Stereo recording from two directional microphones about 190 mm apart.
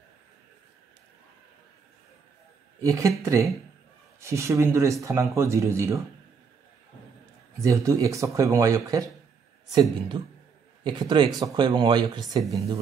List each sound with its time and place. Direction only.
2.8 s speech: 15° right (ahead or behind)
7.6 s speech: 15° right (ahead or behind)